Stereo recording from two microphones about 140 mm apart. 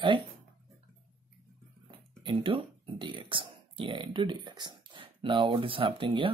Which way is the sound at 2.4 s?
40° right (ahead or behind).